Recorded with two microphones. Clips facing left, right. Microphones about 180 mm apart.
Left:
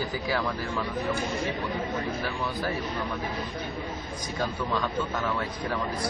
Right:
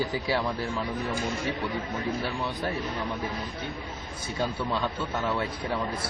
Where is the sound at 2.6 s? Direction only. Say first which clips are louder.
Left 1 dB; centre (ahead or behind).